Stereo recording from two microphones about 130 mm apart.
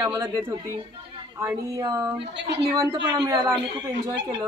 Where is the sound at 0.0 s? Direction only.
30° right (ahead or behind).